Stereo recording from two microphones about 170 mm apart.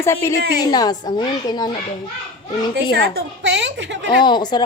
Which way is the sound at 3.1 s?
90° right.